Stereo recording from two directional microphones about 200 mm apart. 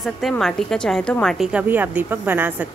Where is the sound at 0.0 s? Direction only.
Centre (ahead or behind).